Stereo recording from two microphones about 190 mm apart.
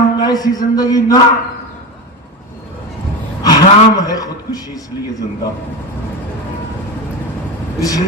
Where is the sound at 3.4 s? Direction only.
20° left (ahead or behind).